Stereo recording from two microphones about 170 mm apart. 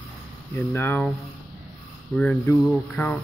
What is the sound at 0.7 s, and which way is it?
Speech, 10° left (ahead or behind).